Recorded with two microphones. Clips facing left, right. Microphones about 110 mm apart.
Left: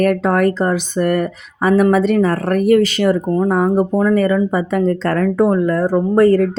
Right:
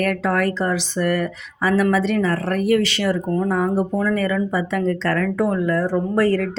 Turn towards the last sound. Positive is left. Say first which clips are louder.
# left 7 dB
turn(degrees=45)  # may be behind; listen again after turning